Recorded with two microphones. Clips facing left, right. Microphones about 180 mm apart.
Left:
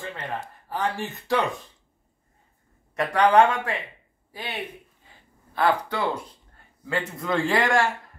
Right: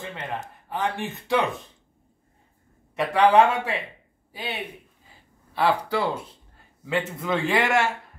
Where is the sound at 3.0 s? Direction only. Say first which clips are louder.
Right 1 dB; 5° right (ahead or behind).